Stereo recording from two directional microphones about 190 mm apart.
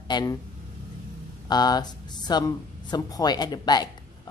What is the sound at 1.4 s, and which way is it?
Speech, 20° left (ahead or behind).